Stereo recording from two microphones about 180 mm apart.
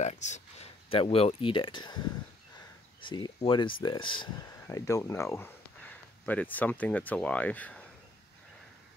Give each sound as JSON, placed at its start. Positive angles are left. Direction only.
{"t": 0.0, "sound": "speech", "side_deg": 40}
{"t": 3.0, "sound": "speech", "side_deg": 25}